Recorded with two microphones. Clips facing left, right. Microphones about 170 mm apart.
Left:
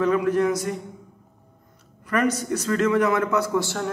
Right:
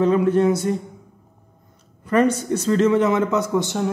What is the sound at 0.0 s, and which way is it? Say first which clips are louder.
Speech: right 4 dB; 30° right (ahead or behind).